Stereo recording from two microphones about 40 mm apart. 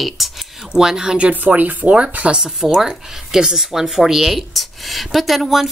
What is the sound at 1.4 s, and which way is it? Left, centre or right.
Speech, right.